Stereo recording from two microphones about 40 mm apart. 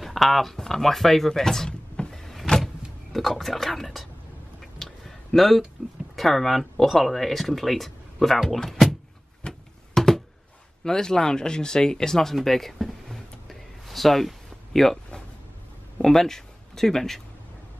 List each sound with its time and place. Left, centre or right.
0.0 s speech: centre
1.7 s power windows: left
2.1 s power windows: centre
3.1 s speech: centre
4.6 s a sound: centre
5.8 s speech: left
6.1 s speech: centre
8.6 s a sound: centre
10.8 s speech: centre
13.1 s a sound: centre
16.0 s speech: centre